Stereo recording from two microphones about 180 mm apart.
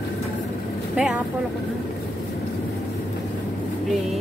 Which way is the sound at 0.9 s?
5° right (ahead or behind).